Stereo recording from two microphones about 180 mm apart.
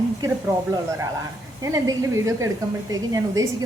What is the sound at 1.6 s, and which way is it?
A woman's voice, 20° right (ahead or behind).